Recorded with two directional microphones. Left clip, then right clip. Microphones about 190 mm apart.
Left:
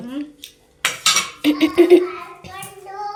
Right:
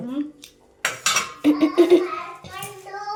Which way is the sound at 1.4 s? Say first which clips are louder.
Left 2 dB; 10° right (ahead or behind).